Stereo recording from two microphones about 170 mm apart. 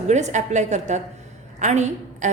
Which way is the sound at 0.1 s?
45° right (ahead or behind).